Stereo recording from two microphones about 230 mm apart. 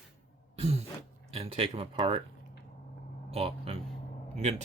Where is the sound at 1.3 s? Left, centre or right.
Right.